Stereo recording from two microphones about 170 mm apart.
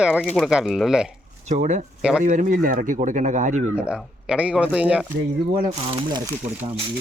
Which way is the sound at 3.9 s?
5° right (ahead or behind).